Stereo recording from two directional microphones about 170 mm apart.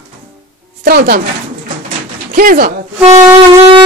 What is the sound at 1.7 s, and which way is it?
Pigeon, 55° right (ahead or behind).